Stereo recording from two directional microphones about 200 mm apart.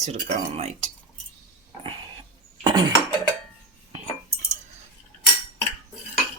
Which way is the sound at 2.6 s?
20° right (ahead or behind).